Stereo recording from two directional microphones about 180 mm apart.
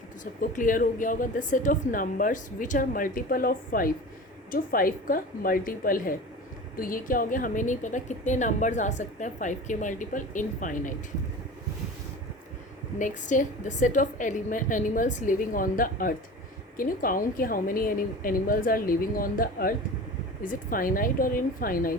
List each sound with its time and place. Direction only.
0.5 s a woman's voice: 50° left (ahead or behind)
13.0 s a woman's voice: 45° left (ahead or behind)